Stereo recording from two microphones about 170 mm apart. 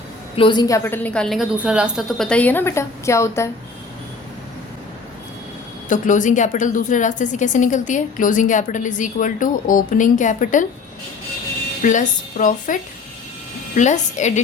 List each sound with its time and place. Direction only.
0.3 s a woman's voice: 30° left (ahead or behind)
5.9 s a woman's voice: 50° left (ahead or behind)
11.8 s a woman's voice: 50° left (ahead or behind)